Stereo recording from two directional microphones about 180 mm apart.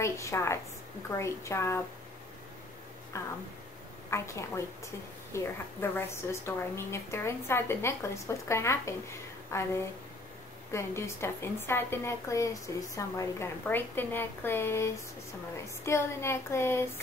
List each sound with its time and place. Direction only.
0.0 s a woman's voice: 15° left (ahead or behind)
3.1 s a woman's voice: 15° left (ahead or behind)
10.7 s a woman's voice: 15° left (ahead or behind)